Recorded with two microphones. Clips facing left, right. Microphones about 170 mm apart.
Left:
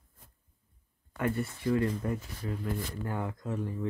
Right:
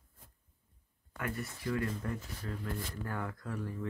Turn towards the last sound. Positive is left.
turn(degrees=20)  # may be behind; listen again after turning